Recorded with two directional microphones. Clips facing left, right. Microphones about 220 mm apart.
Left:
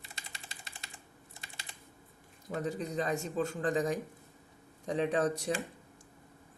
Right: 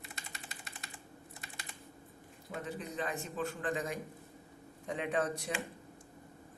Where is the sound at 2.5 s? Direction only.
40° left (ahead or behind).